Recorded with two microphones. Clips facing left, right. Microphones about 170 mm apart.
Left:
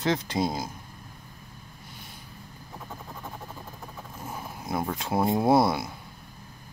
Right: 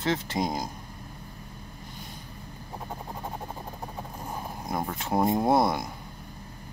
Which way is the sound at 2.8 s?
35° right (ahead or behind).